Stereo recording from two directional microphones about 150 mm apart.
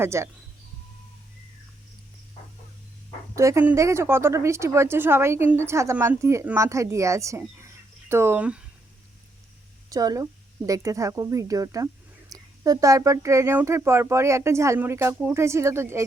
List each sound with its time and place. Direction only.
0.0 s speech: 20° right (ahead or behind)
3.3 s speech: 20° right (ahead or behind)
9.9 s speech: 25° right (ahead or behind)